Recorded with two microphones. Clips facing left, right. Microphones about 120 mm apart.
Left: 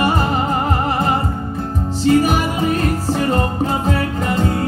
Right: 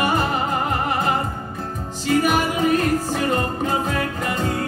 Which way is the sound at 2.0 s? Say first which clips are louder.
Left 4 dB; 30° left (ahead or behind).